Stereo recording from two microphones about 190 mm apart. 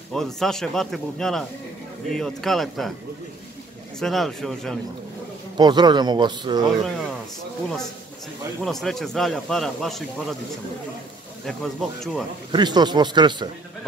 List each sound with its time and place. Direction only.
0.1 s speech: centre (ahead or behind)
4.0 s speech: centre (ahead or behind)
5.6 s speech: 25° right (ahead or behind)
8.6 s speech: centre (ahead or behind)
11.4 s speech: centre (ahead or behind)
12.4 s speech: 25° right (ahead or behind)